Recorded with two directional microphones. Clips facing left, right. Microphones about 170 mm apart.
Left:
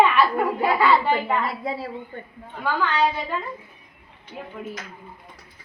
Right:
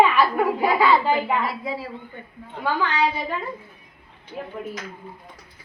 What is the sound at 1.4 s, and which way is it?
Speech, 50° left (ahead or behind).